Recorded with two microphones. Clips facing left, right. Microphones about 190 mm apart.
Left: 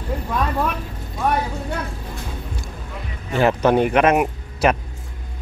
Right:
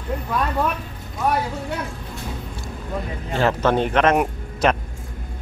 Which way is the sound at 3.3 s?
15° left (ahead or behind).